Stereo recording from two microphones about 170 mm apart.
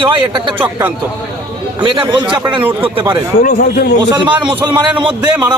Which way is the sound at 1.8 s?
30° right (ahead or behind).